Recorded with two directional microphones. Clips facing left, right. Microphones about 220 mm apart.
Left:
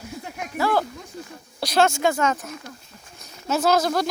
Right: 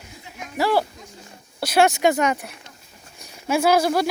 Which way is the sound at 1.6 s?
5° right (ahead or behind).